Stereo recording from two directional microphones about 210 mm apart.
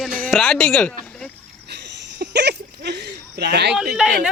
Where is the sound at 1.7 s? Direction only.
55° right (ahead or behind).